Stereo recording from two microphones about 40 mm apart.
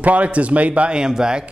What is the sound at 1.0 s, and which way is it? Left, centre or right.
Speech, centre.